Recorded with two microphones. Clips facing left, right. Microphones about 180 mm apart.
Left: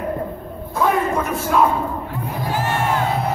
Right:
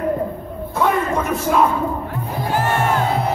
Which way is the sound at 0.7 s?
Centre (ahead or behind).